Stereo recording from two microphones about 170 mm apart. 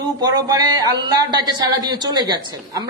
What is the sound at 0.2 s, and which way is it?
Speech, 25° right (ahead or behind).